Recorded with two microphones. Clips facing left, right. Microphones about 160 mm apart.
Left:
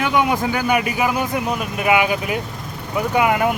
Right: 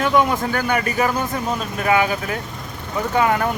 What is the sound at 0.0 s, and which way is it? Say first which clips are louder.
Speech: right 1 dB; 15° left (ahead or behind).